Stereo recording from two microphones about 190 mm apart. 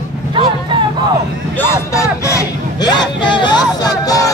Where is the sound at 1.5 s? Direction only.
15° left (ahead or behind).